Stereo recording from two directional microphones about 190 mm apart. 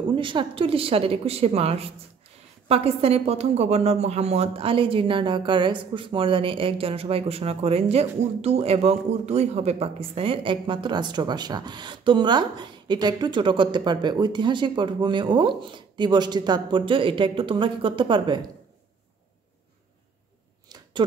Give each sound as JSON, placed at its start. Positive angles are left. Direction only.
{"t": 0.1, "sound": "a woman's voice", "side_deg": -25}